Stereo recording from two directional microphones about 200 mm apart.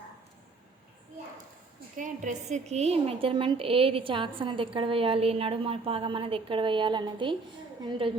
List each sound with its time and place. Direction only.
2.0 s a woman's voice: 40° right (ahead or behind)